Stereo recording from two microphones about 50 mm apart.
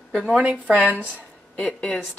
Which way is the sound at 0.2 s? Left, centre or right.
Centre.